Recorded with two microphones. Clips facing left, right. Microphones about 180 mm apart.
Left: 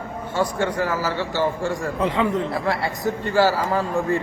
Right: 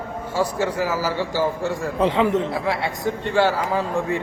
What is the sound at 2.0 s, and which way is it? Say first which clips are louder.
Speech: right 4 dB; 30° right (ahead or behind).